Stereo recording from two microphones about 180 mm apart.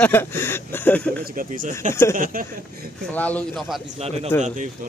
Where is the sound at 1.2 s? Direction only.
50° right (ahead or behind).